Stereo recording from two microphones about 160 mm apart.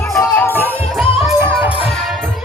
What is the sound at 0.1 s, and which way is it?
Music, 20° left (ahead or behind).